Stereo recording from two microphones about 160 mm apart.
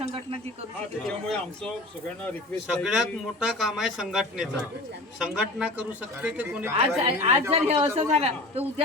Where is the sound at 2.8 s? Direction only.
Centre (ahead or behind).